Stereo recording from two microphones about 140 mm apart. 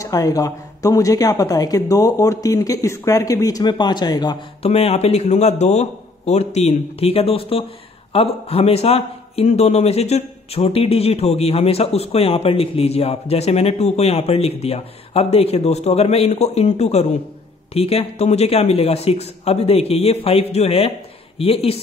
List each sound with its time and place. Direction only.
0.0 s speech: 25° left (ahead or behind)
4.6 s a man's voice: 45° left (ahead or behind)